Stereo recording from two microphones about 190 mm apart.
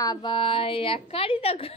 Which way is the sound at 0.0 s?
20° left (ahead or behind).